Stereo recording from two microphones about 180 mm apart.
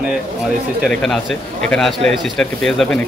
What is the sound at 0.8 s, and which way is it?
A man's voice, 5° left (ahead or behind).